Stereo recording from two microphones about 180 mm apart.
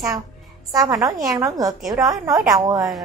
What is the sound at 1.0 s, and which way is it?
A woman's voice, 20° right (ahead or behind).